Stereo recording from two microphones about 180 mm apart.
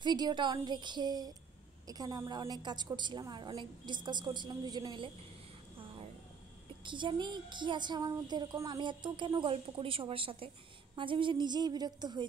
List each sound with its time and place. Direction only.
0.0 s speech: 25° right (ahead or behind)
6.8 s speech: 25° right (ahead or behind)